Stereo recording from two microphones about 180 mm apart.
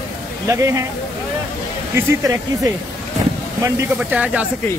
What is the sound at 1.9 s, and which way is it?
Speech, 20° right (ahead or behind).